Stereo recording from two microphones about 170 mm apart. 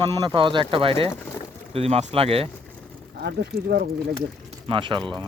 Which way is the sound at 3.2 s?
65° right (ahead or behind).